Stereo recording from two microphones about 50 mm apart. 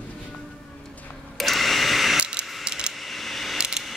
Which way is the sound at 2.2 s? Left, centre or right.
Centre.